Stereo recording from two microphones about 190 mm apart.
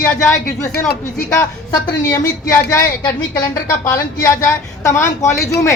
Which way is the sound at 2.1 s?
15° left (ahead or behind).